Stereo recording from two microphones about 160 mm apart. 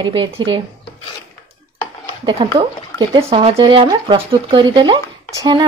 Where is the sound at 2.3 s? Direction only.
30° right (ahead or behind).